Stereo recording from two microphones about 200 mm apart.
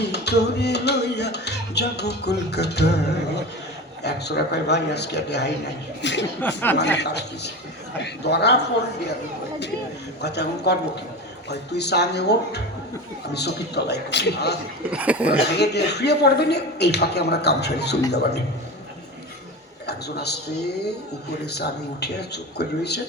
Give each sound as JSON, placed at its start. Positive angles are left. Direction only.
{"t": 0.0, "sound": "music", "side_deg": 55}
{"t": 10.2, "sound": "music", "side_deg": 55}
{"t": 14.8, "sound": "speech", "side_deg": -5}
{"t": 15.5, "sound": "music", "side_deg": 55}
{"t": 19.9, "sound": "music", "side_deg": 55}